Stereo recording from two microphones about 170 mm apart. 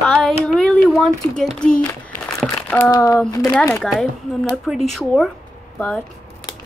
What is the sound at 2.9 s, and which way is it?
Speech, 20° left (ahead or behind).